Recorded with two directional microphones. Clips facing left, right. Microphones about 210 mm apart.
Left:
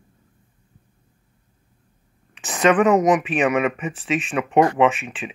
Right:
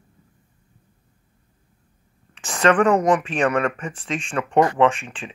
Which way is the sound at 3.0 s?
20° left (ahead or behind).